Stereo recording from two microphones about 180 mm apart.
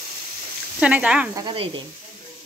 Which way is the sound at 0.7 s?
5° right (ahead or behind).